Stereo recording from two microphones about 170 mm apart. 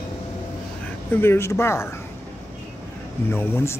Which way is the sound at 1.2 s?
15° left (ahead or behind).